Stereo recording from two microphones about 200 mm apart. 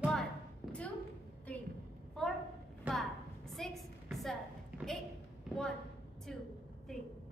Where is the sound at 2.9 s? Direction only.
Centre (ahead or behind).